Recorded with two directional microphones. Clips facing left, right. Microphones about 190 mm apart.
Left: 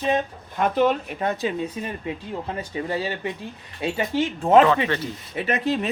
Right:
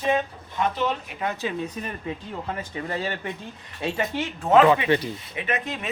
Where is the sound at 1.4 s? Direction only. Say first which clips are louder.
Left 3 dB; 25° left (ahead or behind).